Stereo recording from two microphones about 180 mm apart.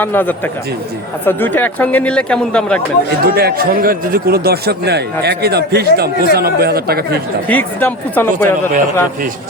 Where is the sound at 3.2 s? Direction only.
60° right (ahead or behind).